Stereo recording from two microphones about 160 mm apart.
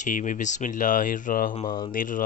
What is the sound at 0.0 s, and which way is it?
Speech, 50° left (ahead or behind).